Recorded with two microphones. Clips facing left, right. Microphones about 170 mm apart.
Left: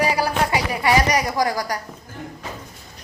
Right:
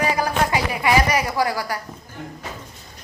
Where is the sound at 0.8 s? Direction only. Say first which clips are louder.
Left 1 dB; 40° left (ahead or behind).